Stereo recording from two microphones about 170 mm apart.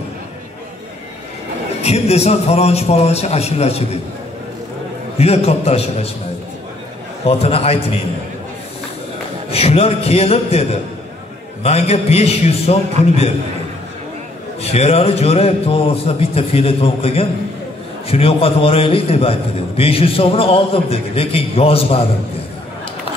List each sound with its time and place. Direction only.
1.8 s a man's voice: 40° left (ahead or behind)
5.1 s a man's voice: 35° left (ahead or behind)
7.2 s a man's voice: 35° left (ahead or behind)
9.5 s a man's voice: 35° left (ahead or behind)
14.6 s a man's voice: 40° left (ahead or behind)